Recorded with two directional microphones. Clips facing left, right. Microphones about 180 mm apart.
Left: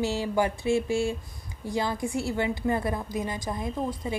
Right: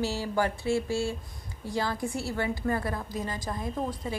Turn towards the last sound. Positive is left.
turn(degrees=15)  # may be behind; listen again after turning